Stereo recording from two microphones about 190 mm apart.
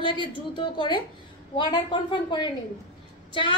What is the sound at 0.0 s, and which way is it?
Speech, 25° left (ahead or behind).